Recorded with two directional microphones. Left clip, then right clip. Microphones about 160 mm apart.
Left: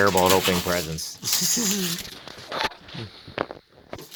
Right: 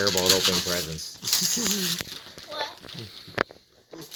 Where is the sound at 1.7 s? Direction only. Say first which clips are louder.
Even; centre (ahead or behind).